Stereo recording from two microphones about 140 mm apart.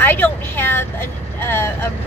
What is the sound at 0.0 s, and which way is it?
Vehicle, 15° left (ahead or behind).